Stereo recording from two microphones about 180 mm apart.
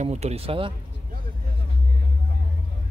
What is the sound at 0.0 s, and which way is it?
Speech, 35° right (ahead or behind).